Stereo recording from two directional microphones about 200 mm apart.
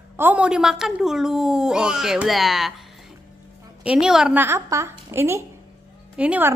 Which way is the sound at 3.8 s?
5° right (ahead or behind).